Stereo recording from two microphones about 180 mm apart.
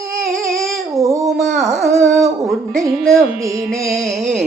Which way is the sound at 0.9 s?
15° right (ahead or behind).